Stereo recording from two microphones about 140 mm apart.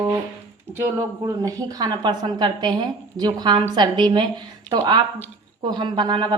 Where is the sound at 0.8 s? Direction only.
25° right (ahead or behind).